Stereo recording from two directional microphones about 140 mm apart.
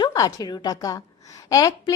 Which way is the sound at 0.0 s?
25° left (ahead or behind).